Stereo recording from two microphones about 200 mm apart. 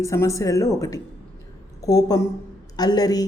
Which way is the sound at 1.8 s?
20° left (ahead or behind).